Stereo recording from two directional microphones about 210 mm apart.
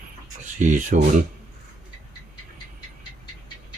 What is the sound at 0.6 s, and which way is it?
Speech, 35° right (ahead or behind).